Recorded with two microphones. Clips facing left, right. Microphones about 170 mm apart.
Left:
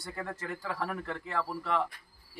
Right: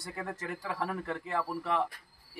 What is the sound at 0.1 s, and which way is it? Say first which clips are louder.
A man's voice: even; 15° right (ahead or behind).